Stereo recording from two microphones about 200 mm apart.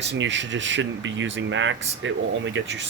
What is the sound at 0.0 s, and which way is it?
Speech, 65° right (ahead or behind).